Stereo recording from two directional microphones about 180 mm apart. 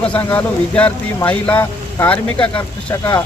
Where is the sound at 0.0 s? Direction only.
10° left (ahead or behind).